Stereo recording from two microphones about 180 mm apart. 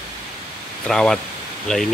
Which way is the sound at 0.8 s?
5° left (ahead or behind).